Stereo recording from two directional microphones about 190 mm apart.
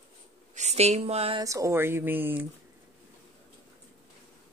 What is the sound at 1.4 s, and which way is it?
Speech, 15° right (ahead or behind).